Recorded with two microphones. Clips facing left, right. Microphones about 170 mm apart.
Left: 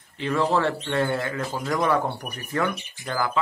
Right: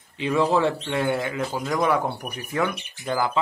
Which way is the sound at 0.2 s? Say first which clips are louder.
Right 2 dB; 15° right (ahead or behind).